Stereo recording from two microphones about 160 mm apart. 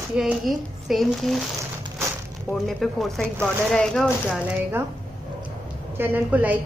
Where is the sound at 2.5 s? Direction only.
Centre (ahead or behind).